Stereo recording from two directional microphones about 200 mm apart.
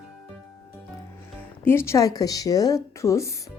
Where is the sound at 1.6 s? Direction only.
10° left (ahead or behind).